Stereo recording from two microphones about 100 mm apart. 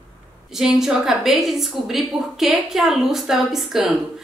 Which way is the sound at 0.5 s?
5° right (ahead or behind).